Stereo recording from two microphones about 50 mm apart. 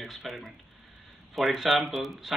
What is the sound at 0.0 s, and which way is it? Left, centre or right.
A man's voice, centre.